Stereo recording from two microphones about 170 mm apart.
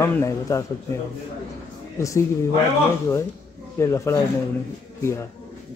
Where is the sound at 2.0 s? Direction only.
20° left (ahead or behind).